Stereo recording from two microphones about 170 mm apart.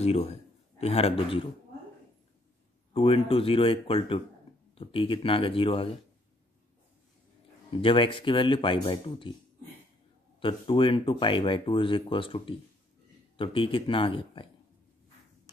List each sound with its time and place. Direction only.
0.0 s a man's voice: 40° left (ahead or behind)
2.9 s speech: 35° left (ahead or behind)
7.8 s speech: 30° left (ahead or behind)
10.4 s speech: 30° left (ahead or behind)